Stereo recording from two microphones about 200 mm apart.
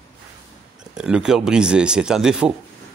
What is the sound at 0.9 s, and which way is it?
Speech, 5° right (ahead or behind).